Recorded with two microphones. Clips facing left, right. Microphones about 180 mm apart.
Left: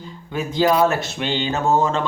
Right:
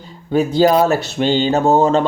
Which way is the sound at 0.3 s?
40° right (ahead or behind).